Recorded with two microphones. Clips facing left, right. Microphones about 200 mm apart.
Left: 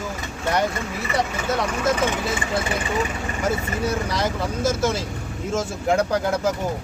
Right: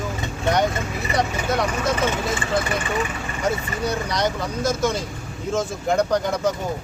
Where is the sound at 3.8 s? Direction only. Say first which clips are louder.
Right 2 dB; 5° left (ahead or behind).